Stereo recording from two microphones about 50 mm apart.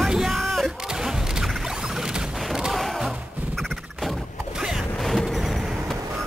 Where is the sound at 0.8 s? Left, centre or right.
Centre.